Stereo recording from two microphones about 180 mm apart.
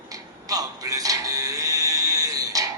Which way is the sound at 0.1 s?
20° right (ahead or behind).